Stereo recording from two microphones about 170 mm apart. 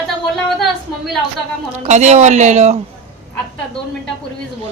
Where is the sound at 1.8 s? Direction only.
40° right (ahead or behind).